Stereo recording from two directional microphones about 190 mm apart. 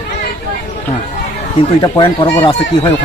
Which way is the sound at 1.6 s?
25° left (ahead or behind).